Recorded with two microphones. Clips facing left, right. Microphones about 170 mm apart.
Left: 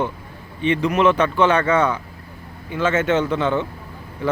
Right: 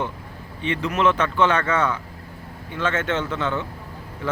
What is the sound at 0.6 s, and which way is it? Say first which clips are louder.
A man's voice: left 4 dB; 15° left (ahead or behind).